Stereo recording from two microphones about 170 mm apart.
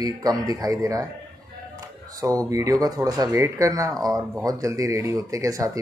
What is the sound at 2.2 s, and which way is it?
A man's voice, 20° right (ahead or behind).